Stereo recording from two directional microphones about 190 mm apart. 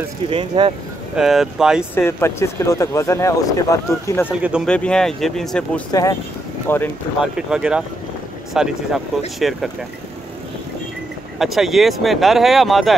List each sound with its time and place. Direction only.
0.3 s speech: 25° right (ahead or behind)
1.1 s speech: centre (ahead or behind)
2.0 s speech: 15° left (ahead or behind)
4.3 s speech: 5° right (ahead or behind)
5.9 s speech: 20° left (ahead or behind)
7.3 s speech: 5° right (ahead or behind)
11.3 s speech: centre (ahead or behind)